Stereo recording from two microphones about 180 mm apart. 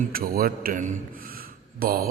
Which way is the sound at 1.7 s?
55° right (ahead or behind).